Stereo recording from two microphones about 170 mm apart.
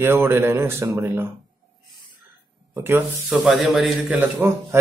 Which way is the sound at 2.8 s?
10° right (ahead or behind).